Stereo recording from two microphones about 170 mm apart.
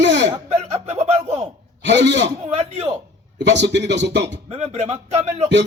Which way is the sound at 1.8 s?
90° right.